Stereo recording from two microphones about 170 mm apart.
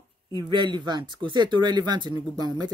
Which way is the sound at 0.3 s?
25° right (ahead or behind).